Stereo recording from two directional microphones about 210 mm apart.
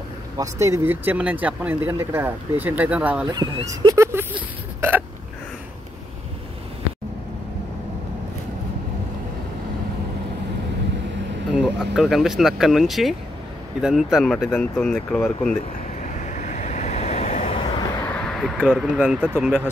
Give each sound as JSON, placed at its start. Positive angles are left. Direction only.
{"t": 0.4, "sound": "speech", "side_deg": -15}
{"t": 3.3, "sound": "speech", "side_deg": -20}
{"t": 11.5, "sound": "speech", "side_deg": -5}
{"t": 16.3, "sound": "vehicle", "side_deg": 35}
{"t": 18.1, "sound": "a sound", "side_deg": 0}
{"t": 19.3, "sound": "speech", "side_deg": -10}